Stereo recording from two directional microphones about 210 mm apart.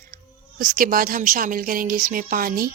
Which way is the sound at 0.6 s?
40° right (ahead or behind).